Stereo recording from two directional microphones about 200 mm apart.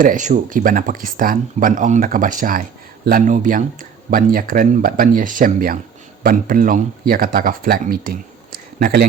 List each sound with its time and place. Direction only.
0.0 s speech: 40° right (ahead or behind)